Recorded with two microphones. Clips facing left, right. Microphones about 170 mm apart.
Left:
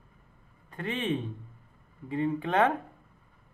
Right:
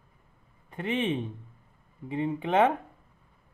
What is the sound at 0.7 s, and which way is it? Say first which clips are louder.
A man's voice: right 2 dB; 20° right (ahead or behind).